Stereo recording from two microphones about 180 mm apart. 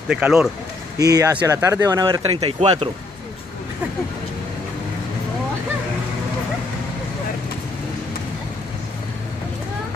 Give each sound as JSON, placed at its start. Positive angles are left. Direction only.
{"t": 0.1, "sound": "speech", "side_deg": -5}
{"t": 0.9, "sound": "speech", "side_deg": -20}